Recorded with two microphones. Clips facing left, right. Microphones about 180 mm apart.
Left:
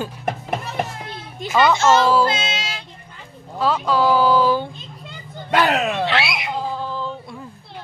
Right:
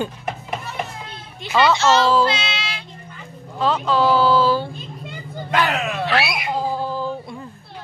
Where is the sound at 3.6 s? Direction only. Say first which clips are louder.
Even; 10° left (ahead or behind).